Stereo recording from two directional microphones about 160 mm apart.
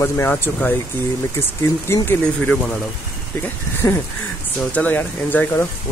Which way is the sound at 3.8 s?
15° left (ahead or behind).